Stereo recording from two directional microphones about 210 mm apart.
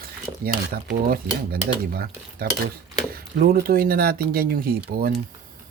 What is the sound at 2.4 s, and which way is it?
Speech, 45° right (ahead or behind).